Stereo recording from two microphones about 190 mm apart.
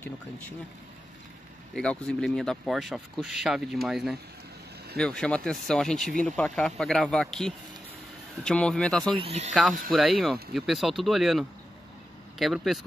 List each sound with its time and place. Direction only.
1.8 s speech: 5° left (ahead or behind)
9.1 s speech: 30° right (ahead or behind)
9.5 s speech: centre (ahead or behind)